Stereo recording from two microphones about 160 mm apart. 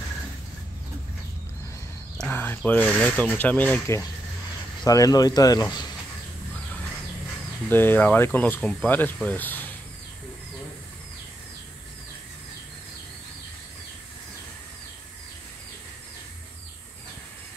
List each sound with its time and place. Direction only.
2.1 s speech: 10° left (ahead or behind)
7.7 s speech: 10° left (ahead or behind)